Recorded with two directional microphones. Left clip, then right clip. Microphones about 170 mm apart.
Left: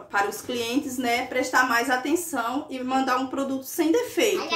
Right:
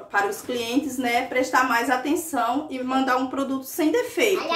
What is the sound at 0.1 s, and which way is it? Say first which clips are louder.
A woman's voice: right 2 dB; 15° left (ahead or behind).